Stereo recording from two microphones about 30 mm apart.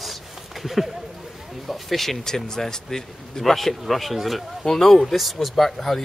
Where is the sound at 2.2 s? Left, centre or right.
Centre.